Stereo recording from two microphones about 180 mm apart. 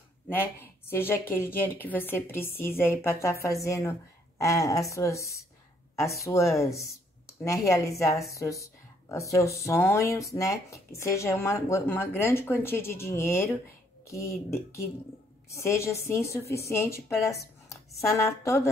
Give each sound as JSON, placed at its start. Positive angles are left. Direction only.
{"t": 0.3, "sound": "speech", "side_deg": 10}
{"t": 15.5, "sound": "speech", "side_deg": 15}